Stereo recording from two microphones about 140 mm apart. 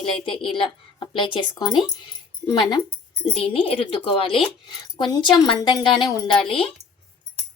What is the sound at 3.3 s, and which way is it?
Speech, 40° left (ahead or behind).